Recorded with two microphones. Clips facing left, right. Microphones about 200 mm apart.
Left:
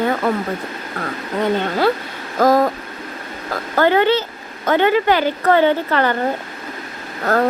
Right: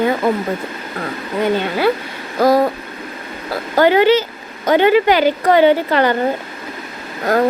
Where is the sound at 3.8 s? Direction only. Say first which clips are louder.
Right 3 dB; 15° right (ahead or behind).